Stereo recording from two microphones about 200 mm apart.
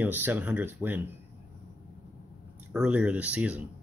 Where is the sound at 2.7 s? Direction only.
5° right (ahead or behind).